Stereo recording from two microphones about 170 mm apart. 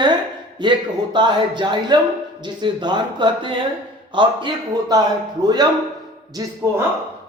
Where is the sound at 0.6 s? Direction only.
25° right (ahead or behind).